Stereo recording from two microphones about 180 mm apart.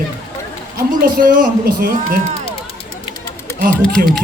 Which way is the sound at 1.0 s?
55° right (ahead or behind).